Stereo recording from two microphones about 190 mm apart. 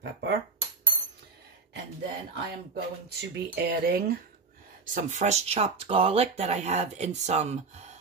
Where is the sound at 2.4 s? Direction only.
60° right (ahead or behind).